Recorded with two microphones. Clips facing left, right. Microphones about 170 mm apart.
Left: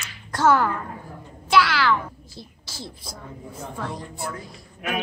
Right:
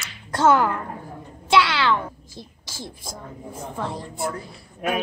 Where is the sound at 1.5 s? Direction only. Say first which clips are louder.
Even; 25° right (ahead or behind).